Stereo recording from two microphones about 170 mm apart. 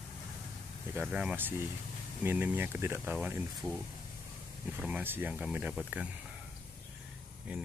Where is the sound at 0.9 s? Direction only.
10° right (ahead or behind).